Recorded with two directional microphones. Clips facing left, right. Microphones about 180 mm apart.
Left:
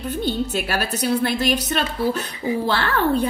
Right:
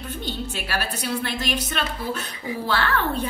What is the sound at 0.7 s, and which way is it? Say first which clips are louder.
A woman's voice: left 5 dB; 40° left (ahead or behind).